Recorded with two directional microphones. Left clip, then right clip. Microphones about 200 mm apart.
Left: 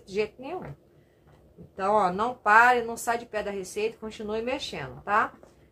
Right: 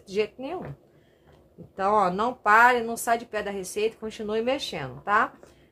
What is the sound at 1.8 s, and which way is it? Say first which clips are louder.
Speech: right 1 dB; 30° right (ahead or behind).